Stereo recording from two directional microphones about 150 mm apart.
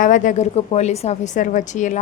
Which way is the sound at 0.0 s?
60° left (ahead or behind).